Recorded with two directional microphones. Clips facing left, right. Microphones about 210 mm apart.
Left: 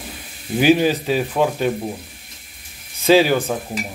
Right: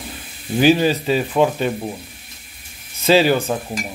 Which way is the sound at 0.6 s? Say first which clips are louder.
Even; 10° left (ahead or behind).